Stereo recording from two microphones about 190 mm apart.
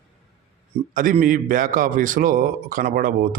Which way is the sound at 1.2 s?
45° right (ahead or behind).